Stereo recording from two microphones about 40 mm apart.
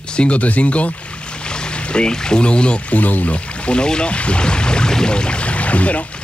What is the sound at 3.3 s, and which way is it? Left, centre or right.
Speech, left.